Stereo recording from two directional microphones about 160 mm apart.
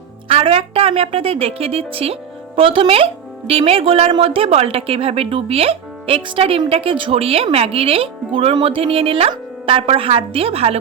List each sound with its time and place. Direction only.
0.3 s speech: 40° right (ahead or behind)